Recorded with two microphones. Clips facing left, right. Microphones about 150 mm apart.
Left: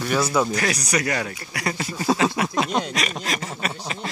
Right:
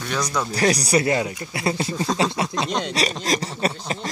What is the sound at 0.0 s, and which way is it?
Speech, 5° left (ahead or behind).